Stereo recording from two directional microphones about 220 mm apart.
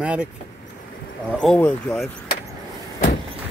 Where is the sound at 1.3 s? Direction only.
Centre (ahead or behind).